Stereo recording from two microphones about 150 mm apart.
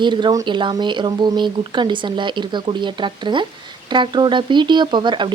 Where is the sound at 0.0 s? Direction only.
30° right (ahead or behind).